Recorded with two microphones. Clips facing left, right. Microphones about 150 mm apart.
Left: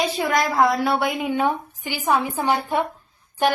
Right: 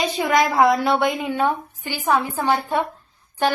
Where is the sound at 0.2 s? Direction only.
Centre (ahead or behind).